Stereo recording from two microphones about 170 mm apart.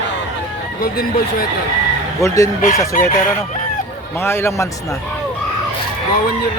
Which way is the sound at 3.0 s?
50° left (ahead or behind).